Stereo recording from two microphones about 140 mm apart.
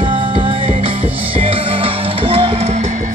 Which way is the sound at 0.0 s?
40° right (ahead or behind).